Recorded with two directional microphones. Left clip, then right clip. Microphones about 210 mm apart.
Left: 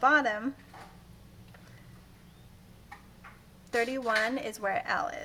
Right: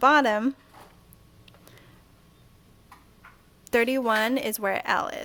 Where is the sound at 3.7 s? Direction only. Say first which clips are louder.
Right 6 dB; 50° right (ahead or behind).